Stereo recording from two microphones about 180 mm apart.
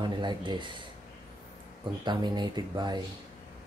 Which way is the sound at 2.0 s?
25° right (ahead or behind).